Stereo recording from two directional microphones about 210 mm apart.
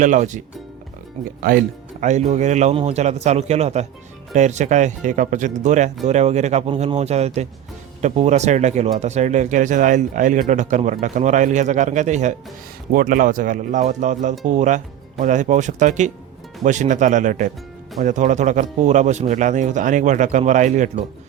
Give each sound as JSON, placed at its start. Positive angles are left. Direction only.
{"t": 0.0, "sound": "speech", "side_deg": -35}
{"t": 1.5, "sound": "speech", "side_deg": -45}
{"t": 2.0, "sound": "speech", "side_deg": -35}